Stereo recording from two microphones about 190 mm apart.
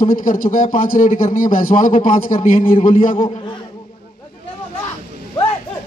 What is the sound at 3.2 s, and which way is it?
Speech, 25° left (ahead or behind).